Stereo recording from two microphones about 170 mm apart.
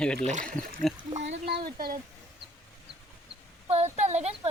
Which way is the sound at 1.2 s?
80° right.